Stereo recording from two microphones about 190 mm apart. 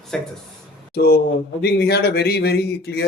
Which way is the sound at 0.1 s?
5° left (ahead or behind).